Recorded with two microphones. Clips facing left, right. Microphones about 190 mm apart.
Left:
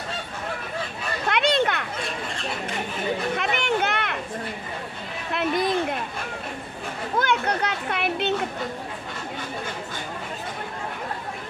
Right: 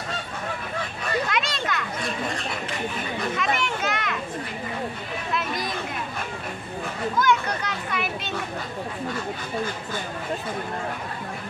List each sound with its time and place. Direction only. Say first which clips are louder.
1.3 s children playing: left 6 dB; 60° left (ahead or behind)
3.3 s children playing: left 2 dB; 60° left (ahead or behind)
5.3 s a sound: left 6 dB; 60° left (ahead or behind)
7.2 s children playing: left 1 dB; 65° left (ahead or behind)